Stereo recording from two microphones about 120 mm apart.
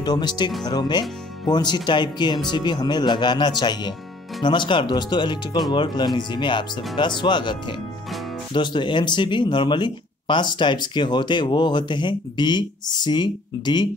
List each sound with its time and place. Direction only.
0.0 s speech: 35° left (ahead or behind)